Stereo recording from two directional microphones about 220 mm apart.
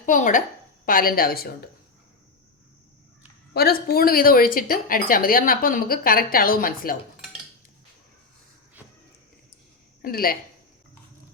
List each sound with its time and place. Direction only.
0.0 s speech: 35° left (ahead or behind)
3.5 s speech: 45° left (ahead or behind)
10.0 s speech: 40° left (ahead or behind)